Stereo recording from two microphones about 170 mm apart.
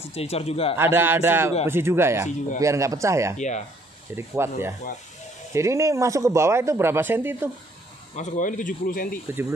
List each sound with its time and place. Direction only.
0.1 s speech: 35° left (ahead or behind)
0.7 s speech: 15° right (ahead or behind)
3.3 s speech: 45° left (ahead or behind)
4.4 s speech: 15° right (ahead or behind)
8.2 s speech: 45° left (ahead or behind)